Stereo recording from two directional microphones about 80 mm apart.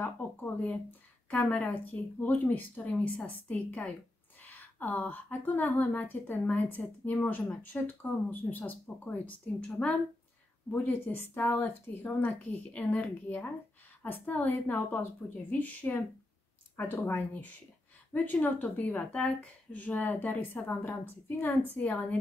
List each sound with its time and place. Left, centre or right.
0.0 s a woman's voice: left
10.7 s speech: left